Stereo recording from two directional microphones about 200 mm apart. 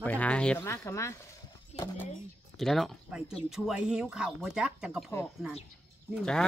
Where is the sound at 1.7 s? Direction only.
30° left (ahead or behind).